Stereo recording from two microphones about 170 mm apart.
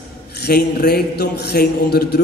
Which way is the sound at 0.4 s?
65° left (ahead or behind).